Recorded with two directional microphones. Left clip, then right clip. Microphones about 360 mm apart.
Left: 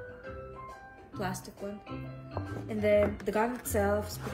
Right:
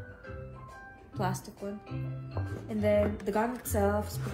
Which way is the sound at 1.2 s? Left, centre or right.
Centre.